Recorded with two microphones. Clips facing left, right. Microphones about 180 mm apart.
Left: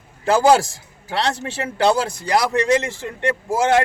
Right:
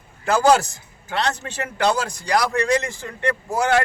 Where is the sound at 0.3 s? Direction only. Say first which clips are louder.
Left 2 dB; 30° left (ahead or behind).